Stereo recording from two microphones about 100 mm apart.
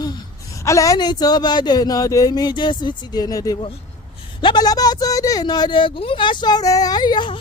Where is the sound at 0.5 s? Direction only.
30° left (ahead or behind).